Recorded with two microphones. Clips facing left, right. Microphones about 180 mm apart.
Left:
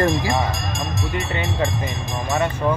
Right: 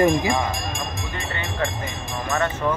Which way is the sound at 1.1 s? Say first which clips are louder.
Left 5 dB; 20° left (ahead or behind).